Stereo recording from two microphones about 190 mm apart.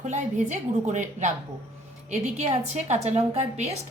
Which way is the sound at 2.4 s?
35° right (ahead or behind).